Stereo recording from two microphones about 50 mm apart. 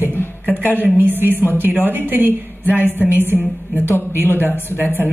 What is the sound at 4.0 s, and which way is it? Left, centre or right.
Speech, right.